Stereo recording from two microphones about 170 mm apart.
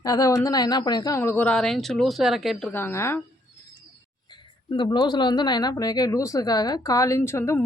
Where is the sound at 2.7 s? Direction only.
15° left (ahead or behind).